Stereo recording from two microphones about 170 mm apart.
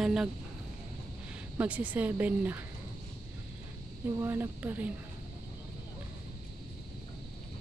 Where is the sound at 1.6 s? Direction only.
10° right (ahead or behind).